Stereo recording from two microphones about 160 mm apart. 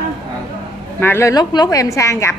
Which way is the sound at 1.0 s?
15° left (ahead or behind).